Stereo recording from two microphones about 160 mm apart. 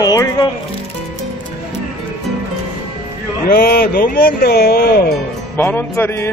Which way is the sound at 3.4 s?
70° left (ahead or behind).